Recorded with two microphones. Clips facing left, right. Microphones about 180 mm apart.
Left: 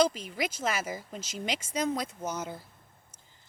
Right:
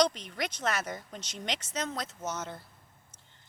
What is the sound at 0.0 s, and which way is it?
Speech, 5° left (ahead or behind).